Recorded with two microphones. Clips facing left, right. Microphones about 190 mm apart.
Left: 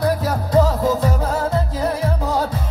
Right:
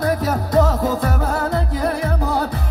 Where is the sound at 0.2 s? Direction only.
70° right (ahead or behind).